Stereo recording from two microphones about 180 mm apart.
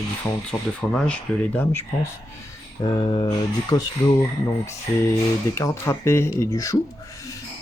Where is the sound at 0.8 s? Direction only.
5° left (ahead or behind).